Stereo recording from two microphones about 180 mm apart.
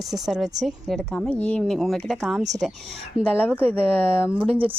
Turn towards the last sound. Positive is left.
turn(degrees=-30)  # may be behind; listen again after turning